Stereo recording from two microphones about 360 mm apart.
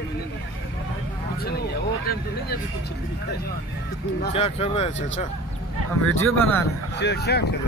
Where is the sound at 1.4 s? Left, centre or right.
Left.